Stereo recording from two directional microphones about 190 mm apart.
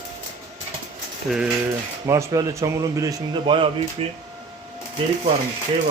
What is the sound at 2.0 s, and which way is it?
A man's voice, 15° right (ahead or behind).